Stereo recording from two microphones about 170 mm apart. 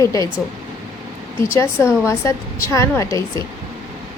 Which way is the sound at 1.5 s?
15° left (ahead or behind).